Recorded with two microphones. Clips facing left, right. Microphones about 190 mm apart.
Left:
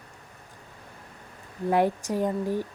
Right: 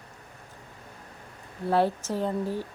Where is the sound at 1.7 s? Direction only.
15° left (ahead or behind).